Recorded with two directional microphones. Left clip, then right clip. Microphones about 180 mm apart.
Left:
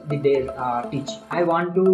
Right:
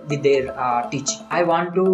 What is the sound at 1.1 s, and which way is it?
Speech, 15° left (ahead or behind).